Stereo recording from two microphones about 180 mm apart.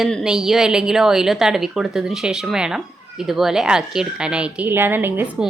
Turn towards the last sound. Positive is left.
turn(degrees=-10)  # may be behind; listen again after turning